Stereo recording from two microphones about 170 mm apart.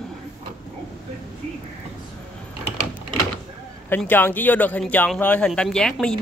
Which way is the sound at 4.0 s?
10° left (ahead or behind).